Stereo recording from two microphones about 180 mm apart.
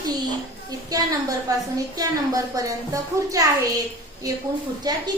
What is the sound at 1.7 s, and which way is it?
A woman's voice, 20° right (ahead or behind).